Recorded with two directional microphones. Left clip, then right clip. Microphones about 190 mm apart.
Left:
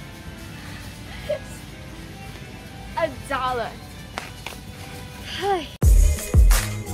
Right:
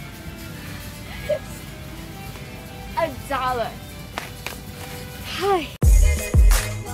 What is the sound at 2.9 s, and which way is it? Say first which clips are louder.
Speech: right 1 dB; 15° left (ahead or behind).